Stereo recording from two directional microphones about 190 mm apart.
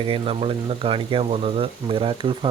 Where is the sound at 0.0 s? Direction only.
30° right (ahead or behind).